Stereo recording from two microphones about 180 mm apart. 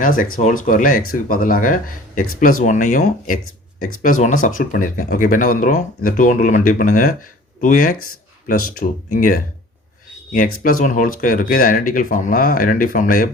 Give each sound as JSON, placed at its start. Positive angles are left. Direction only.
{"t": 0.0, "sound": "speech", "side_deg": 50}